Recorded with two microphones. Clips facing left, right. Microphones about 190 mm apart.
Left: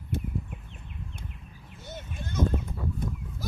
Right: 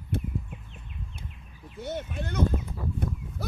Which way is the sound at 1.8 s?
60° right (ahead or behind).